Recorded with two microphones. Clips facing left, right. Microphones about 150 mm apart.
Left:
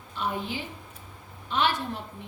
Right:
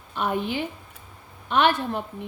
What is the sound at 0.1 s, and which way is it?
A woman's voice, 60° right (ahead or behind).